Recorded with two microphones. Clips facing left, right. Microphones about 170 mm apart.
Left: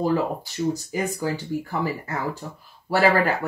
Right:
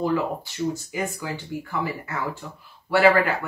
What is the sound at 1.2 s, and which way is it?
Speech, 40° left (ahead or behind).